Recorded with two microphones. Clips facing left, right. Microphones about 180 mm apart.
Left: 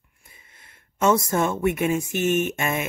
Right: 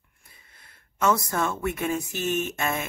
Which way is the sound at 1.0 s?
20° left (ahead or behind).